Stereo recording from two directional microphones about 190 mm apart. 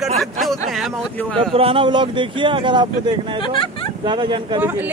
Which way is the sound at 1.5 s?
30° right (ahead or behind).